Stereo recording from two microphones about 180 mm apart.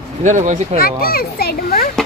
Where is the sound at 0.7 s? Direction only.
55° left (ahead or behind).